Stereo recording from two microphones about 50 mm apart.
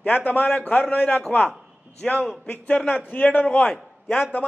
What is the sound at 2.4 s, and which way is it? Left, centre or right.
A man's voice, left.